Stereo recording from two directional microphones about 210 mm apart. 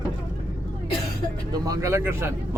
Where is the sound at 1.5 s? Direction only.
15° right (ahead or behind).